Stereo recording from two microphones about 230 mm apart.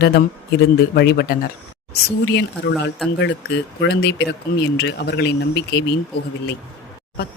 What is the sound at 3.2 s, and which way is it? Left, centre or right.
Speech, left.